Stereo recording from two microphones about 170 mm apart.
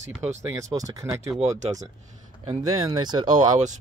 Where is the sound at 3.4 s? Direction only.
45° right (ahead or behind).